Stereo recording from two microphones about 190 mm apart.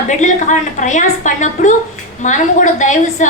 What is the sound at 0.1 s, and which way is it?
A woman's voice, 40° left (ahead or behind).